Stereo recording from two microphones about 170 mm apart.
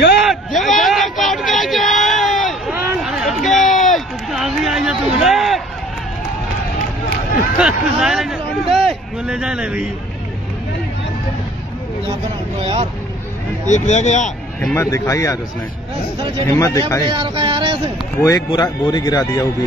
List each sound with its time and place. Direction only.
0.2 s a sound: centre (ahead or behind)
7.5 s a man's voice: 5° right (ahead or behind)
13.7 s speech: 45° left (ahead or behind)
14.7 s speech: 15° left (ahead or behind)
16.2 s speech: 30° right (ahead or behind)
16.4 s speech: 20° left (ahead or behind)
17.1 s a sound: 30° right (ahead or behind)
18.2 s a man's voice: 25° left (ahead or behind)